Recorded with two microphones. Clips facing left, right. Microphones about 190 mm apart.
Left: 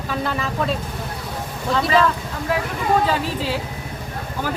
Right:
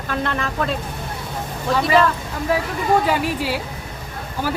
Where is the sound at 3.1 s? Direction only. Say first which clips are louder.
Right 1 dB; 10° right (ahead or behind).